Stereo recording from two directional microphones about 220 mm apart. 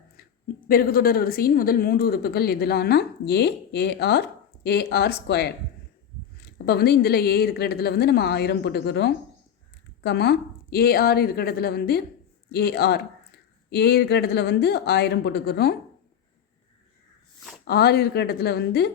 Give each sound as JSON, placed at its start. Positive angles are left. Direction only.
{"t": 0.7, "sound": "speech", "side_deg": 40}
{"t": 17.7, "sound": "speech", "side_deg": 45}